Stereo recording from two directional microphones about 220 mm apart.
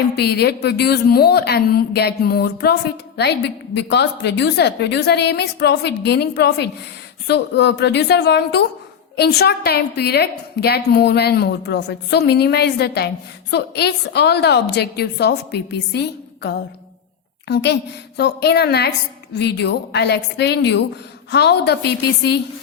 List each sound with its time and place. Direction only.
0.2 s a woman's voice: 45° left (ahead or behind)